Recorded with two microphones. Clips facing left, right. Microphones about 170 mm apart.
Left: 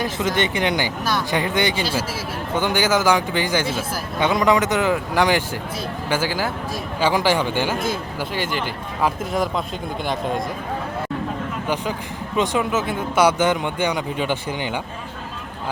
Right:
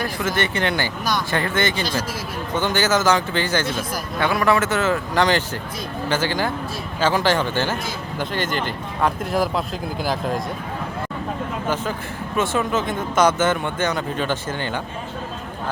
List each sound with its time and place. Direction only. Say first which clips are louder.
0.0 s speech: left 2 dB; 20° left (ahead or behind); by 10.4 s centre (ahead or behind)
12.4 s speech: left 1 dB; 10° left (ahead or behind)